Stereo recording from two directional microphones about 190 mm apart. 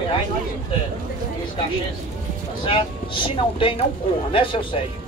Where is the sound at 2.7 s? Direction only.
30° left (ahead or behind).